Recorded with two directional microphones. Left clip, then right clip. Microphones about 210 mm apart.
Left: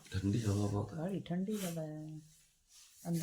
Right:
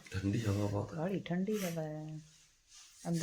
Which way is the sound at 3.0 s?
30° right (ahead or behind).